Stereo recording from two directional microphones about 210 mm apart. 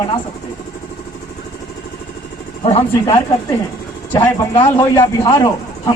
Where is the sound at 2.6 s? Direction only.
25° left (ahead or behind).